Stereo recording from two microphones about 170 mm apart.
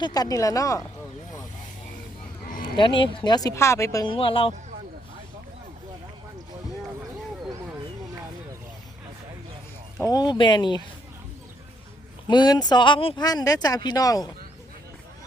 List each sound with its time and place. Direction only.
0.0 s speech: 20° left (ahead or behind)
2.7 s speech: 30° left (ahead or behind)
10.0 s speech: 20° left (ahead or behind)
12.3 s speech: 25° left (ahead or behind)